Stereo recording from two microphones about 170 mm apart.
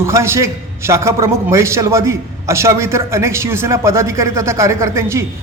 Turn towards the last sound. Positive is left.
turn(degrees=-15)  # may be behind; listen again after turning